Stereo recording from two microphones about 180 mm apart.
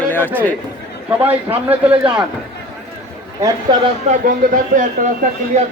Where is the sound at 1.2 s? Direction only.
10° right (ahead or behind).